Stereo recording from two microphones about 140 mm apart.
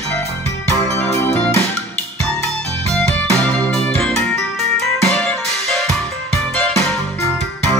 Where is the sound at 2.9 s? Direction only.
5° left (ahead or behind).